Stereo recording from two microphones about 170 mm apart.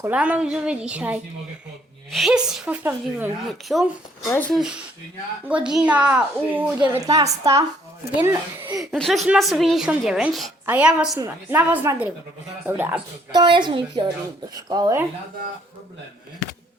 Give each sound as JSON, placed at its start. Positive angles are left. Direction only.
{"t": 0.0, "sound": "a woman's voice", "side_deg": -10}
{"t": 4.3, "sound": "speech", "side_deg": 10}
{"t": 5.5, "sound": "a woman's voice", "side_deg": -5}
{"t": 8.8, "sound": "a woman's voice", "side_deg": 0}
{"t": 13.3, "sound": "a woman's voice", "side_deg": -30}